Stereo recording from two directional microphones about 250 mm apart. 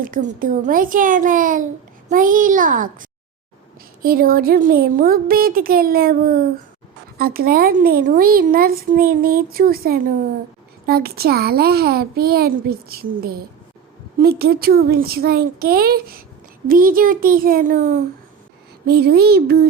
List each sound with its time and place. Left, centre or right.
0.0 s speech: right